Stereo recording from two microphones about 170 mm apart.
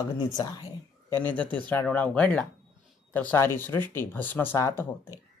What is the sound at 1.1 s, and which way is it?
A woman's voice, 10° left (ahead or behind).